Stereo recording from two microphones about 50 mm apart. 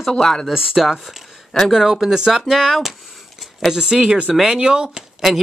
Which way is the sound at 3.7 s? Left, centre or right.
Centre.